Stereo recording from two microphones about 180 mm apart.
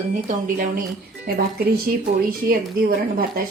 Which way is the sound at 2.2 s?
55° right (ahead or behind).